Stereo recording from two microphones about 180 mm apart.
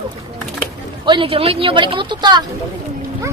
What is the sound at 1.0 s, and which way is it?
Speech, 25° right (ahead or behind).